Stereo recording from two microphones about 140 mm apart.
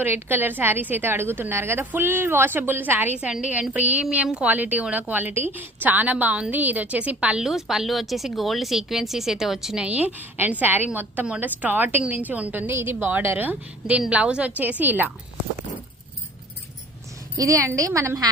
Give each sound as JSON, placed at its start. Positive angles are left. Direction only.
{"t": 0.0, "sound": "a woman's voice", "side_deg": -15}
{"t": 17.3, "sound": "a woman's voice", "side_deg": -25}